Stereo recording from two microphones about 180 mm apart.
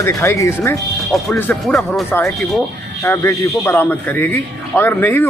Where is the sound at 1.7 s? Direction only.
Centre (ahead or behind).